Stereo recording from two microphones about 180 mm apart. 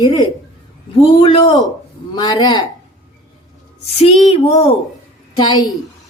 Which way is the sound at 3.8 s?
35° left (ahead or behind).